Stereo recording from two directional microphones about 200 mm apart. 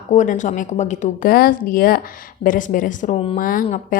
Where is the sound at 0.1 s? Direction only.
40° left (ahead or behind).